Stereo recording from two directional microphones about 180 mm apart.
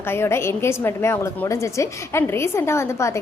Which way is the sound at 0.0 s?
15° left (ahead or behind).